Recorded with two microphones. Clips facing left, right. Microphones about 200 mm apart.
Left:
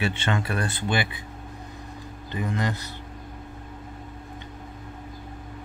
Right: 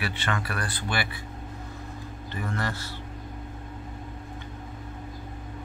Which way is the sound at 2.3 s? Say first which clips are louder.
Left 4 dB; 15° left (ahead or behind).